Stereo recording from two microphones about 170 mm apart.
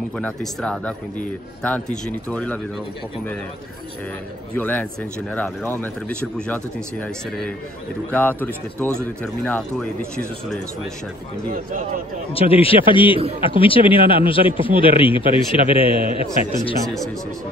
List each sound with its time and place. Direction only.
0.2 s speech: 5° left (ahead or behind)
4.6 s speech: 10° left (ahead or behind)
11.5 s a man's voice: 50° right (ahead or behind)
12.3 s a man's voice: 35° left (ahead or behind)
16.8 s speech: centre (ahead or behind)